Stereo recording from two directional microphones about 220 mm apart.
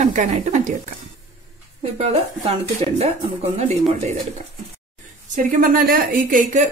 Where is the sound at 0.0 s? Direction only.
35° right (ahead or behind).